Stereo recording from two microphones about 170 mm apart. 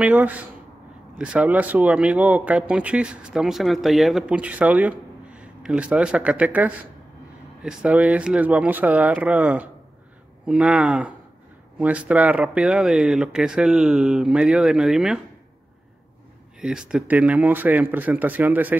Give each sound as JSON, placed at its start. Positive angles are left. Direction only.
{"t": 0.0, "sound": "speech", "side_deg": -10}
{"t": 16.6, "sound": "speech", "side_deg": -5}